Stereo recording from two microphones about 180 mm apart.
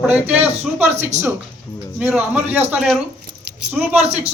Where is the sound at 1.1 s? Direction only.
40° right (ahead or behind).